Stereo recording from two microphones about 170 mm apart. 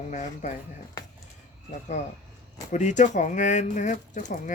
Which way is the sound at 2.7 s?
45° left (ahead or behind).